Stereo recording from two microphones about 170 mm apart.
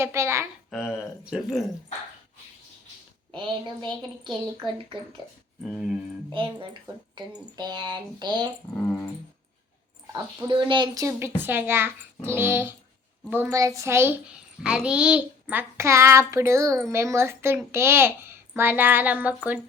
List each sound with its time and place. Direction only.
0.0 s a child's voice: 15° right (ahead or behind)
0.7 s speech: centre (ahead or behind)
3.3 s speech: 30° right (ahead or behind)
5.6 s speech: 5° left (ahead or behind)
6.3 s speech: 30° right (ahead or behind)
10.4 s a child's voice: 30° right (ahead or behind); by 19.5 s 10° right (ahead or behind)